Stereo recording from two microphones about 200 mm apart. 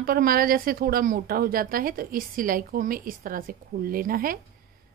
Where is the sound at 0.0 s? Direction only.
45° right (ahead or behind).